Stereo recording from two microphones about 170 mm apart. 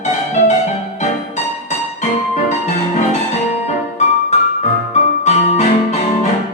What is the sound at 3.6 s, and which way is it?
Music, 40° left (ahead or behind).